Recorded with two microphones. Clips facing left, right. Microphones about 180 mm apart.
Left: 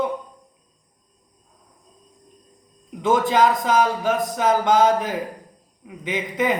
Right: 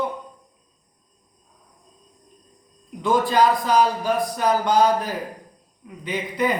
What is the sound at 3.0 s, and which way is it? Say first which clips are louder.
A man's voice: left 1 dB; 20° left (ahead or behind).